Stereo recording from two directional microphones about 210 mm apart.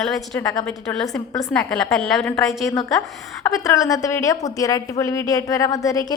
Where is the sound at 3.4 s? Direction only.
15° left (ahead or behind).